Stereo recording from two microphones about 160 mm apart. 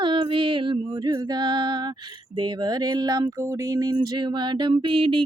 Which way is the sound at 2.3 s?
25° right (ahead or behind).